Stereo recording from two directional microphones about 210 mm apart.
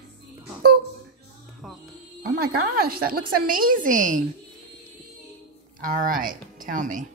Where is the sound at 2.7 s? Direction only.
45° right (ahead or behind).